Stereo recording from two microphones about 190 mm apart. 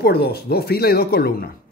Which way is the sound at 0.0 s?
55° left (ahead or behind).